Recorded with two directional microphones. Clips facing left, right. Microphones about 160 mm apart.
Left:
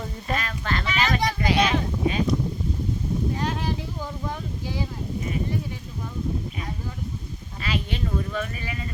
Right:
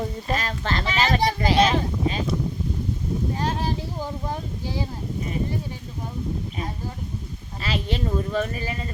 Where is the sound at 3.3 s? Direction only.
35° right (ahead or behind).